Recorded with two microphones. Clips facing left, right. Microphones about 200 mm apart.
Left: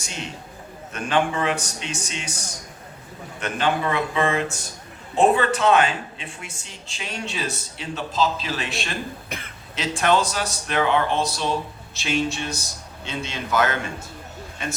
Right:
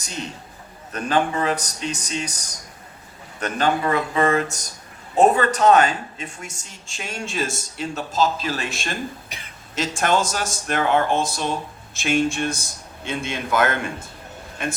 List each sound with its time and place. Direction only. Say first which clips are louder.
0.0 s a man's voice: right 2 dB; 40° right (ahead or behind)
3.4 s a man's voice: right 2 dB; 40° right (ahead or behind)